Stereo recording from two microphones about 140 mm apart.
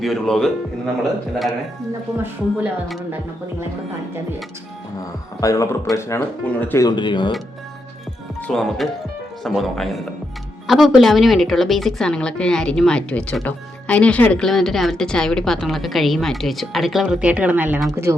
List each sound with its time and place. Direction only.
0.0 s a woman's voice: centre (ahead or behind)
2.1 s speech: 15° right (ahead or behind)
5.4 s speech: 25° left (ahead or behind)
6.8 s speech: 35° left (ahead or behind)
8.4 s a woman's voice: 5° left (ahead or behind); by 17.7 s 10° right (ahead or behind)